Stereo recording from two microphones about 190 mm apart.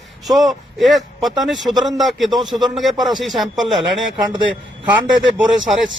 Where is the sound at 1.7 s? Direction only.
20° right (ahead or behind).